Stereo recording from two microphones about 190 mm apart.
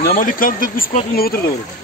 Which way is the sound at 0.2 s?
45° left (ahead or behind).